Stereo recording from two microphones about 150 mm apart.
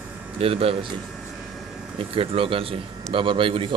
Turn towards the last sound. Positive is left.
turn(degrees=-35)  # may be behind; listen again after turning